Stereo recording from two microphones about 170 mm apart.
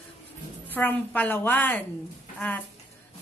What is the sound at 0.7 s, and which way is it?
A woman's voice, 10° left (ahead or behind).